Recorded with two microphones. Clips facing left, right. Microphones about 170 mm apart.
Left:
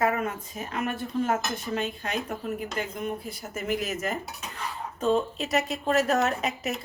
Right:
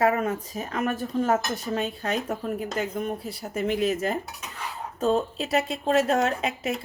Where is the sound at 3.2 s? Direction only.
35° right (ahead or behind).